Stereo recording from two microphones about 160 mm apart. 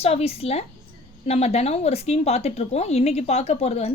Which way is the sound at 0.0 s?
40° left (ahead or behind).